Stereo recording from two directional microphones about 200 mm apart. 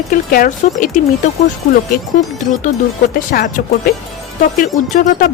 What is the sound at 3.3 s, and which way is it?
Speech, 45° left (ahead or behind).